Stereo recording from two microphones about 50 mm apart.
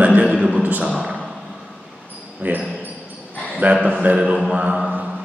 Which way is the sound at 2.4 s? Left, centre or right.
Right.